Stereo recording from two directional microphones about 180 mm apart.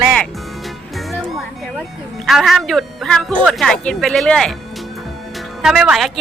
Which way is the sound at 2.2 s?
Centre (ahead or behind).